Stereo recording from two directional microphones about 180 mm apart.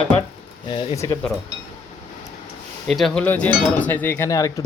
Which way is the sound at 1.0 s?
15° left (ahead or behind).